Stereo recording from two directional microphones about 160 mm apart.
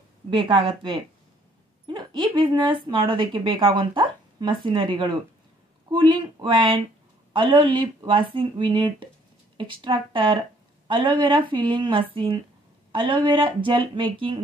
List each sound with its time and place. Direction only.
0.3 s speech: 35° right (ahead or behind)
1.9 s speech: 30° right (ahead or behind)